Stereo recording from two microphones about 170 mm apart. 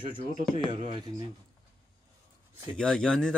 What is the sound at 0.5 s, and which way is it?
Speech, 30° right (ahead or behind).